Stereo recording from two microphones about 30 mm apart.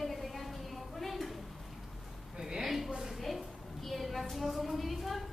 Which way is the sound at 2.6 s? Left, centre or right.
Centre.